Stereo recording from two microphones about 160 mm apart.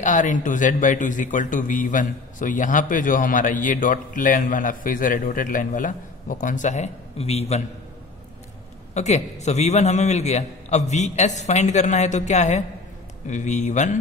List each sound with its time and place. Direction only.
0.0 s speech: 50° left (ahead or behind)
8.9 s a man's voice: 45° left (ahead or behind)